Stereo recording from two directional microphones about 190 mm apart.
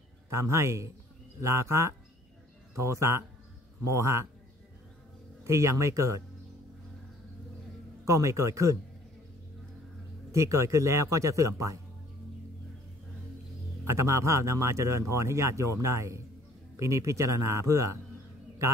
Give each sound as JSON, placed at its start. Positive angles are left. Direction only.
{"t": 0.3, "sound": "speech", "side_deg": -15}
{"t": 5.4, "sound": "speech", "side_deg": -15}
{"t": 8.0, "sound": "speech", "side_deg": -15}
{"t": 10.3, "sound": "speech", "side_deg": -15}
{"t": 13.8, "sound": "speech", "side_deg": -15}